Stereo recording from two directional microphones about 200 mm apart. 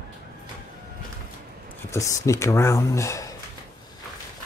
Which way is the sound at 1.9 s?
15° left (ahead or behind).